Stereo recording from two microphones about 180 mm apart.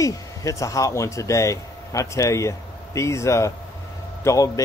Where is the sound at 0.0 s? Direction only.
20° left (ahead or behind).